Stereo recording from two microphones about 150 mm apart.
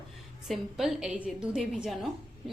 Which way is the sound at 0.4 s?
Centre (ahead or behind).